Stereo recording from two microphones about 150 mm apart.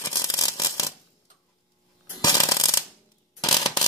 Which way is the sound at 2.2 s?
25° left (ahead or behind).